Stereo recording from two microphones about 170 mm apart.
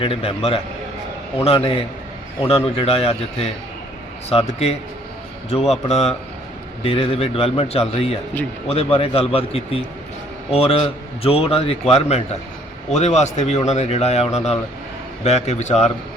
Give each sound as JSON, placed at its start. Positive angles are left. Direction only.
{"t": 0.0, "sound": "speech", "side_deg": 35}